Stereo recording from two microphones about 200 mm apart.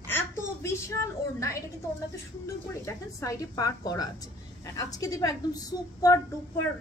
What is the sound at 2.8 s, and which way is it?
A woman's voice, 15° left (ahead or behind).